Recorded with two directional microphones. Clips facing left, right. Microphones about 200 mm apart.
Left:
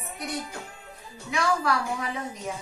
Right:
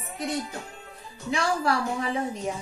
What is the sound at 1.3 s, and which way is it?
Speech, 30° right (ahead or behind).